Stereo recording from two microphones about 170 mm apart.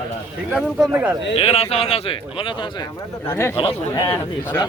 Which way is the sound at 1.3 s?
35° left (ahead or behind).